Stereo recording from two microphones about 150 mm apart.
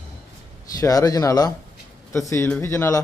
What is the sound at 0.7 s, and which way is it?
Speech, 25° left (ahead or behind).